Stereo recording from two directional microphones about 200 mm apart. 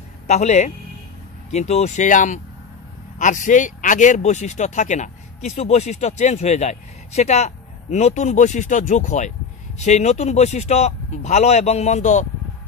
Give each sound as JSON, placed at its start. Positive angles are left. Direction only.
{"t": 0.3, "sound": "speech", "side_deg": 35}